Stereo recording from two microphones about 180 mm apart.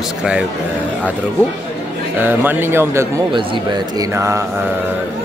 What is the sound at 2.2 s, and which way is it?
Speech, 10° right (ahead or behind).